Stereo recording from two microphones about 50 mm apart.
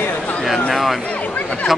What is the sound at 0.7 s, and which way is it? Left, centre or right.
Speech, centre.